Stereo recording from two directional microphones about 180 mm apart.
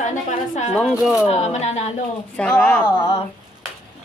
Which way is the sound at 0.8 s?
Centre (ahead or behind).